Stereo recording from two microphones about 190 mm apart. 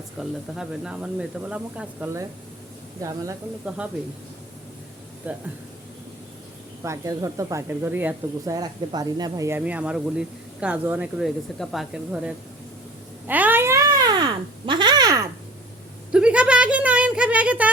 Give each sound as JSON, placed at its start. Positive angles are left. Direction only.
{"t": 0.2, "sound": "speech", "side_deg": 0}
{"t": 5.2, "sound": "speech", "side_deg": -10}
{"t": 6.8, "sound": "speech", "side_deg": -15}
{"t": 13.2, "sound": "a sound", "side_deg": -10}
{"t": 14.7, "sound": "babbling", "side_deg": -25}
{"t": 16.1, "sound": "a sound", "side_deg": -5}